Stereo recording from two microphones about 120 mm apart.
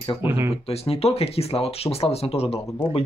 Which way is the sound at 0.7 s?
55° left (ahead or behind).